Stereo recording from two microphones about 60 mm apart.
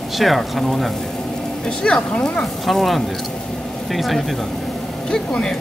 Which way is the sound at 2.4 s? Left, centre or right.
Centre.